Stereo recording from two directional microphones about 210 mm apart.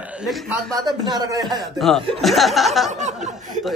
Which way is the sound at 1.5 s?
Centre (ahead or behind).